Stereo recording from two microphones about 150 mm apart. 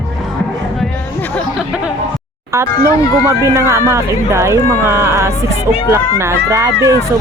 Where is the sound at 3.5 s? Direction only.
20° right (ahead or behind).